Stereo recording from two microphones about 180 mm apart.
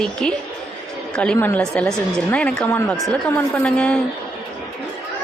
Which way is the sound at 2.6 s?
15° left (ahead or behind).